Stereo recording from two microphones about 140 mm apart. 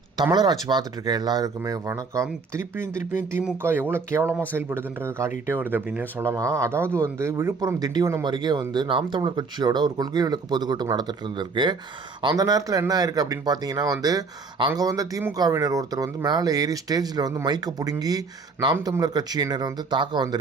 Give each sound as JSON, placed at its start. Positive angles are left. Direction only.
{"t": 0.3, "sound": "speech", "side_deg": -30}
{"t": 2.8, "sound": "speech", "side_deg": 70}
{"t": 3.6, "sound": "speech", "side_deg": -15}